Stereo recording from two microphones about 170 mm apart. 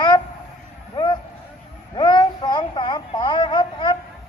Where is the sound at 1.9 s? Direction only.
25° left (ahead or behind).